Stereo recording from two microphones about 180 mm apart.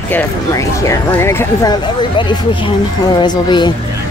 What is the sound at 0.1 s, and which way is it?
A woman's voice, 15° left (ahead or behind).